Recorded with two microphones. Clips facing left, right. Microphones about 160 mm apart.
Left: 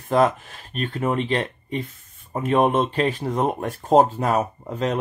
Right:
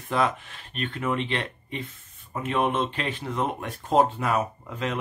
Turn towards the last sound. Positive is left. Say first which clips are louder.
# left 6 dB
turn(degrees=40)  # may be behind; listen again after turning